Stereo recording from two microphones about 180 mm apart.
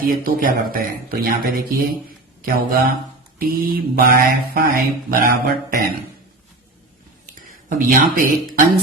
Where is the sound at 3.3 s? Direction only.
55° right (ahead or behind).